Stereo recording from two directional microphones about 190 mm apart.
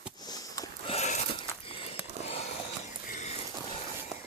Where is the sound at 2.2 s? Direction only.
35° left (ahead or behind).